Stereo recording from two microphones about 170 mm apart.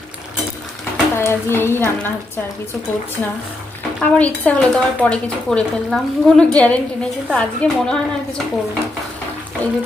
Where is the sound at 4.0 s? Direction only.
10° left (ahead or behind).